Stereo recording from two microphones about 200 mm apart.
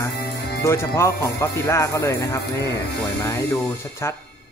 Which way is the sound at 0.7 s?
15° left (ahead or behind).